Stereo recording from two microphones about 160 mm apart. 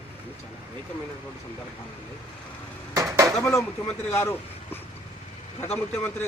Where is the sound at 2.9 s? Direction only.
20° right (ahead or behind).